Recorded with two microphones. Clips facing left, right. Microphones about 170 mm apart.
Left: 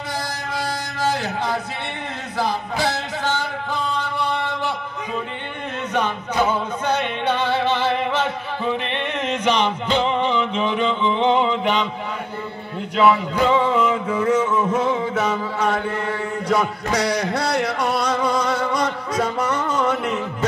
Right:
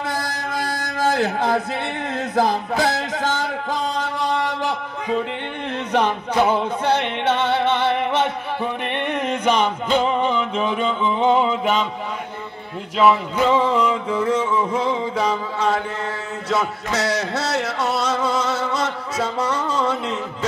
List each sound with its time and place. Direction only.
0.2 s music: 50° right (ahead or behind)
5.9 s music: 30° right (ahead or behind)
9.2 s music: 10° right (ahead or behind)
9.9 s mantra: 5° right (ahead or behind)
12.9 s music: centre (ahead or behind)
16.4 s a sound: 15° left (ahead or behind)
19.8 s a sound: 10° left (ahead or behind)